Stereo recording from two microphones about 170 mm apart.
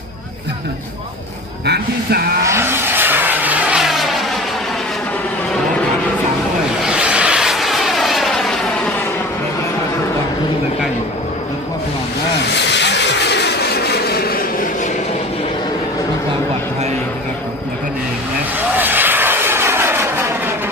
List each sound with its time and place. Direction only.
1.6 s speech: 70° right (ahead or behind)
2.4 s vehicle: 15° right (ahead or behind)
6.8 s vehicle: 5° right (ahead or behind)
12.5 s vehicle: 90° left; by 14.8 s 55° left (ahead or behind)
18.8 s vehicle: 10° right (ahead or behind)